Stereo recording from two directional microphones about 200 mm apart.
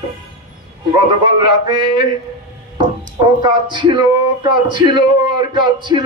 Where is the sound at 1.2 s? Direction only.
20° right (ahead or behind).